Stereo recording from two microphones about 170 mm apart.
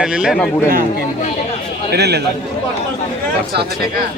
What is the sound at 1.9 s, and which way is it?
Speech, 75° right (ahead or behind).